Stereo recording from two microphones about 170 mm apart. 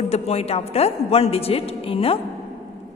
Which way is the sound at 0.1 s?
35° left (ahead or behind).